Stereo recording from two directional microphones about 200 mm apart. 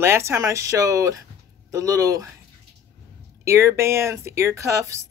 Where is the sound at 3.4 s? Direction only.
15° right (ahead or behind).